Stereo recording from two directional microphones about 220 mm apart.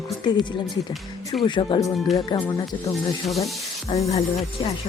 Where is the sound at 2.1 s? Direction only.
15° left (ahead or behind).